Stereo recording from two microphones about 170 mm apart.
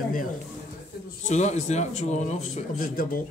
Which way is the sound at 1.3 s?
45° left (ahead or behind).